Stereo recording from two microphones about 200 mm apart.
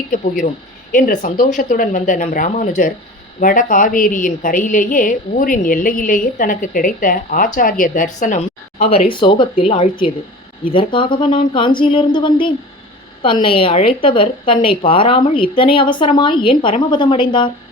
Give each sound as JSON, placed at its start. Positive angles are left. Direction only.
{"t": 0.9, "sound": "a woman's voice", "side_deg": 45}